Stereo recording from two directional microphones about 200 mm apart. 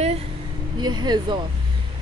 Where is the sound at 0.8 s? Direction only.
20° right (ahead or behind).